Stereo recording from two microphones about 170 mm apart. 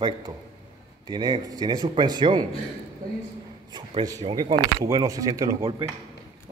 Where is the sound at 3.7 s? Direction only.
25° right (ahead or behind).